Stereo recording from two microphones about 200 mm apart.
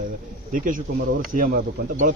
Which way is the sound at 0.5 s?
40° right (ahead or behind).